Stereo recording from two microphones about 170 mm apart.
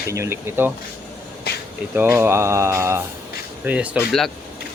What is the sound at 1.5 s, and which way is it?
Insect, 75° left (ahead or behind).